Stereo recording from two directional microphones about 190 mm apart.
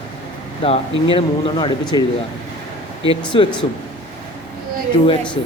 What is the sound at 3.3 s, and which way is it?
Speech, 25° left (ahead or behind).